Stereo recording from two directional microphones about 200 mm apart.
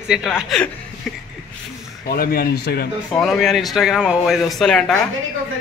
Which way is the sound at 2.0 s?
50° left (ahead or behind).